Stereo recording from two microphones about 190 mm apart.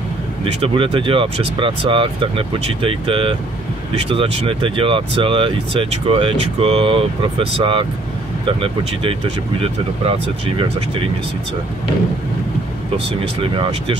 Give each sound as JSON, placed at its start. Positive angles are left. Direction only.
{"t": 0.6, "sound": "speech", "side_deg": -30}